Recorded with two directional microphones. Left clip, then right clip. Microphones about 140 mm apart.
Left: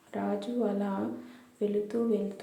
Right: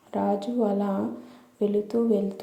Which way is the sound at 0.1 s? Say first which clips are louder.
Right 7 dB; 25° right (ahead or behind).